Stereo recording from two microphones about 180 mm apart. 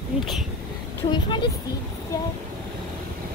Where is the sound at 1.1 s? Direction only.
25° left (ahead or behind).